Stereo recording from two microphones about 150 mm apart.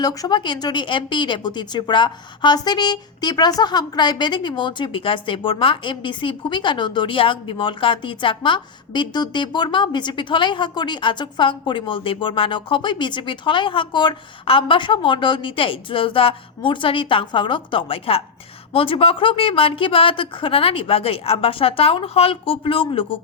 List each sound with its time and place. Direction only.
0.0 s speech: 25° left (ahead or behind)